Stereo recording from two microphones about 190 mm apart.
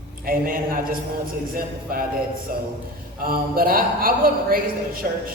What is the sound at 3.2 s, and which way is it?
A woman's voice, 50° right (ahead or behind).